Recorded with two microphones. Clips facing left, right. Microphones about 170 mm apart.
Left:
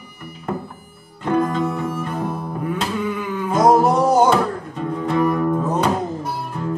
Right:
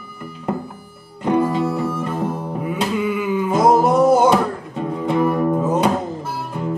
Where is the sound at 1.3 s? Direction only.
10° right (ahead or behind).